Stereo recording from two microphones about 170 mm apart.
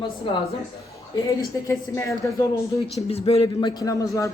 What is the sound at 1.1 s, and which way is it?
A woman's voice, 20° left (ahead or behind).